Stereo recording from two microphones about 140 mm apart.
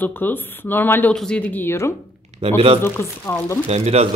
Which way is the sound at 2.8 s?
20° left (ahead or behind).